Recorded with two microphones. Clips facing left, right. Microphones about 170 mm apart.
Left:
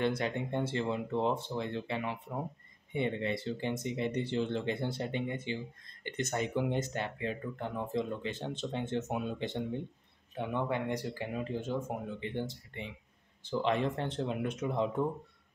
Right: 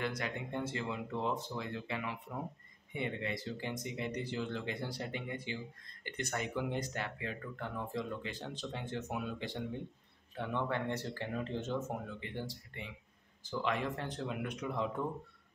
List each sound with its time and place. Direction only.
0.0 s speech: 25° left (ahead or behind)